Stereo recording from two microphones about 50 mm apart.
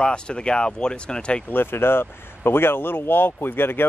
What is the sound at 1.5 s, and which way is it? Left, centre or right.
Speech, left.